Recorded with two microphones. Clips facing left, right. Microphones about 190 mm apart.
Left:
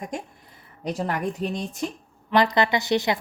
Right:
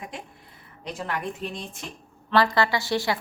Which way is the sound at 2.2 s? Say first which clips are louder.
Left 1 dB; 20° left (ahead or behind).